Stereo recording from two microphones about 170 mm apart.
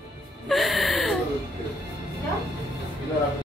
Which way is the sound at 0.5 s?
Centre (ahead or behind).